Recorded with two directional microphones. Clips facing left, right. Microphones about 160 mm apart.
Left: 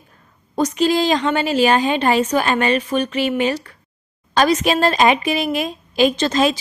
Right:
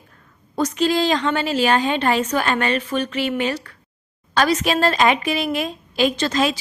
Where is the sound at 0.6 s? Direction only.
15° left (ahead or behind).